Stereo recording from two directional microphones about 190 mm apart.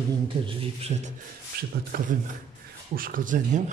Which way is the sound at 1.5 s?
50° right (ahead or behind).